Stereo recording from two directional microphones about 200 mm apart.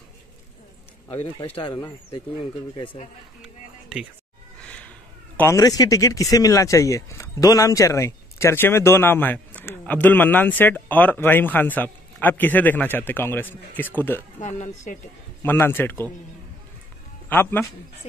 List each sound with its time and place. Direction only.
1.0 s speech: 10° left (ahead or behind)
1.6 s speech: 20° left (ahead or behind)
3.4 s a sound: 5° right (ahead or behind)
4.6 s cat: 5° left (ahead or behind)
5.4 s a man's voice: 15° left (ahead or behind)
14.4 s speech: 35° left (ahead or behind)
15.4 s a man's voice: 10° left (ahead or behind)
17.3 s a man's voice: 10° left (ahead or behind)